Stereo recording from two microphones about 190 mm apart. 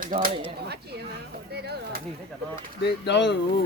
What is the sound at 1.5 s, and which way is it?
Speech, 60° right (ahead or behind).